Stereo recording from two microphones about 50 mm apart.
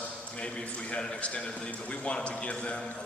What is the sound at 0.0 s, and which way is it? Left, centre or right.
A man's voice, left.